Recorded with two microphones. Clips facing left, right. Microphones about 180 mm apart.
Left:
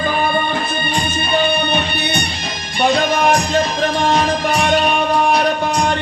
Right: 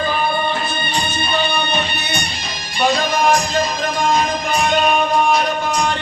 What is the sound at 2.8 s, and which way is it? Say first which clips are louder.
Music: left 2 dB; 60° left (ahead or behind).